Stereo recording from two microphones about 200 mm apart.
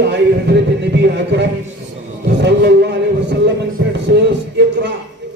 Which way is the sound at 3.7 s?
55° right (ahead or behind).